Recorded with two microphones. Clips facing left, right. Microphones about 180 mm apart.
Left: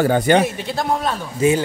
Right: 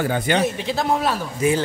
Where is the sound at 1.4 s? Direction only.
25° left (ahead or behind).